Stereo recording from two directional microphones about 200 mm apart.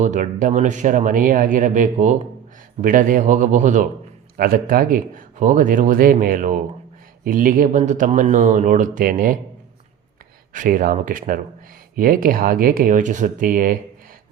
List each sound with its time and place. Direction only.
0.0 s speech: 40° right (ahead or behind)
10.5 s speech: 40° right (ahead or behind)